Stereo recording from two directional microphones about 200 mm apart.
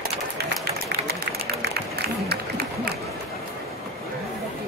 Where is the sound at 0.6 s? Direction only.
50° right (ahead or behind).